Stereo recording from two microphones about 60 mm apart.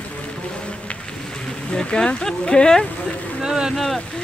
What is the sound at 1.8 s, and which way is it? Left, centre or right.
Speech, centre.